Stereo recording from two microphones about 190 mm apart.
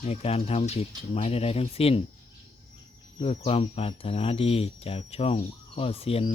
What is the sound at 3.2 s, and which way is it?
Speech, 30° left (ahead or behind).